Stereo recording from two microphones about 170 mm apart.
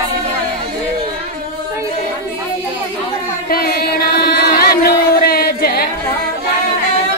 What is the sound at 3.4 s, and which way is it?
Music, 60° left (ahead or behind).